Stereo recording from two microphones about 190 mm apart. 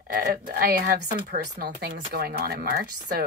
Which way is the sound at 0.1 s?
50° right (ahead or behind).